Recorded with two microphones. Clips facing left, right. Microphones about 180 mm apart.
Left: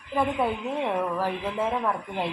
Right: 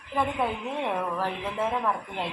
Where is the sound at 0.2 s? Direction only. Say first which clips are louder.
Left 2 dB; 10° left (ahead or behind).